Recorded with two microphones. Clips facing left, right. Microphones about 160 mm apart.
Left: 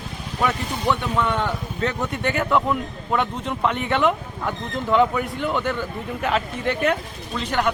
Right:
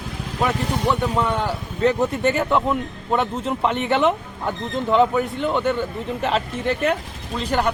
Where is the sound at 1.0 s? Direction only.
35° right (ahead or behind).